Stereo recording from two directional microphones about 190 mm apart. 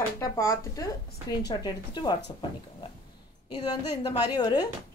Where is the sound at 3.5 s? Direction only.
20° left (ahead or behind).